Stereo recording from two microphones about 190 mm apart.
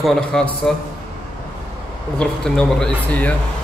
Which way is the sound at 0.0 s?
Centre (ahead or behind).